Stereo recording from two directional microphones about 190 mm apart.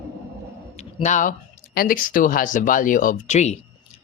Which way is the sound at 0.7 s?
35° left (ahead or behind).